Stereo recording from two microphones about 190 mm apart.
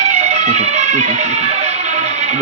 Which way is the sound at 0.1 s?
40° right (ahead or behind).